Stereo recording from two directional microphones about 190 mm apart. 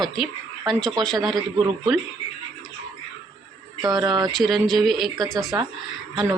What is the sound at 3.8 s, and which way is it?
Speech, 20° right (ahead or behind).